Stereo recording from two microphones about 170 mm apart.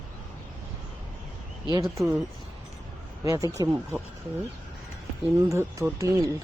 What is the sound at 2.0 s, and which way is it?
Speech, 10° right (ahead or behind).